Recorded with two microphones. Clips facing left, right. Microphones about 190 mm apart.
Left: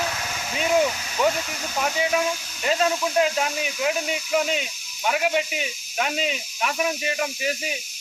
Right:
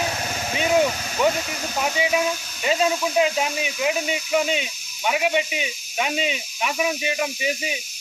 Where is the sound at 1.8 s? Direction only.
10° right (ahead or behind).